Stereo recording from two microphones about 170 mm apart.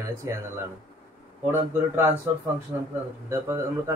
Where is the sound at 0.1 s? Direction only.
20° right (ahead or behind).